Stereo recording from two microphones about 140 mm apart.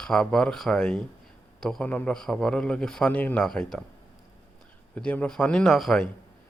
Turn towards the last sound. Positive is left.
turn(degrees=0)  # may be behind; listen again after turning